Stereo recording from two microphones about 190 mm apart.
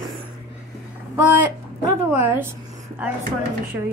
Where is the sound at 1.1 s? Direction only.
10° right (ahead or behind).